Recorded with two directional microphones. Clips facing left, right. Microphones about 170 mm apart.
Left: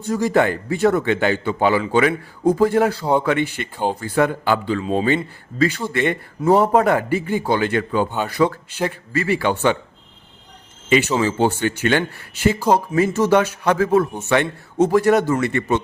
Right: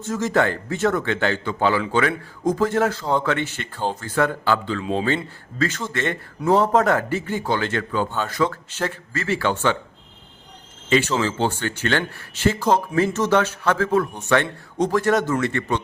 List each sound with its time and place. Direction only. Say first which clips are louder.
0.3 s a man's voice: left 2 dB; 15° left (ahead or behind)
10.8 s a man's voice: left 3 dB; 15° left (ahead or behind)